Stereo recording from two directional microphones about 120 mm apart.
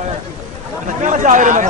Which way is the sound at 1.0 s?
90° right.